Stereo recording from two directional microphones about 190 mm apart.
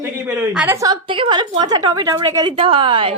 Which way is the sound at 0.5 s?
10° right (ahead or behind).